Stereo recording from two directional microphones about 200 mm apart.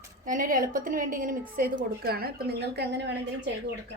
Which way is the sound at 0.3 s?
45° right (ahead or behind).